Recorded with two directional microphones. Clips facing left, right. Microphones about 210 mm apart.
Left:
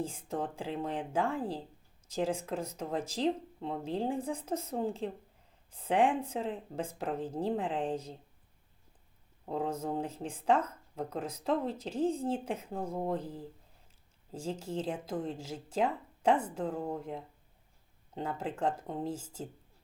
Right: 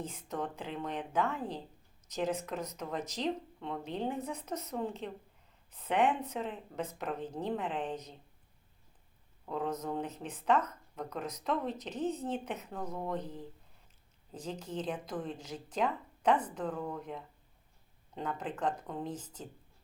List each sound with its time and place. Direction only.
0.0 s speech: 30° left (ahead or behind)
9.5 s speech: 30° left (ahead or behind)
14.3 s speech: 25° left (ahead or behind)